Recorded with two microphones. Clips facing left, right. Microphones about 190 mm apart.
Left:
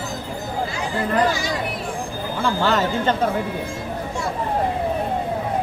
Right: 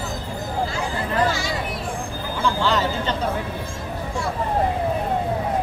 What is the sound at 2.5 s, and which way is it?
Speech, 50° left (ahead or behind).